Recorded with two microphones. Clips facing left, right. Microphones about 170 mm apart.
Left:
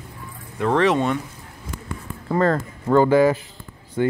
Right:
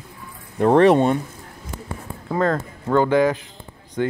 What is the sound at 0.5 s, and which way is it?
Speech, 45° right (ahead or behind).